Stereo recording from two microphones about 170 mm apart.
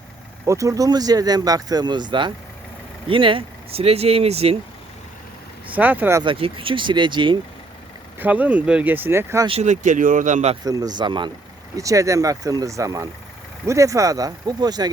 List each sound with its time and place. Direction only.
0.4 s speech: 20° right (ahead or behind); by 4.5 s 35° right (ahead or behind)
5.6 s speech: 10° right (ahead or behind)
6.2 s speech: 30° right (ahead or behind)
8.2 s speech: 10° right (ahead or behind)
9.5 s speech: 40° right (ahead or behind)
10.6 s speech: 20° right (ahead or behind)